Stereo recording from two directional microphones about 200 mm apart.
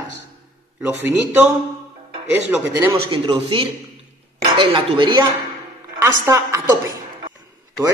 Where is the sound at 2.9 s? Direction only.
25° right (ahead or behind).